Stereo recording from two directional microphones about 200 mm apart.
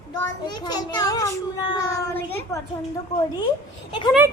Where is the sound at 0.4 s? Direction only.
20° left (ahead or behind).